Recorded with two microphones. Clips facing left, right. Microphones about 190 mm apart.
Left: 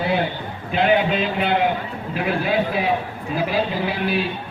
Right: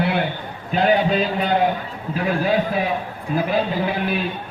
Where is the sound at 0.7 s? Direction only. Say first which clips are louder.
Right 1 dB; 40° right (ahead or behind).